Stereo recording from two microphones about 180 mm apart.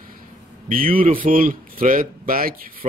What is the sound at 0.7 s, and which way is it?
Speech, 50° right (ahead or behind).